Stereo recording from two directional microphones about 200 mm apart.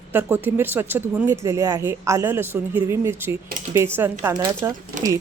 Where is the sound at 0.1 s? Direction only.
10° right (ahead or behind).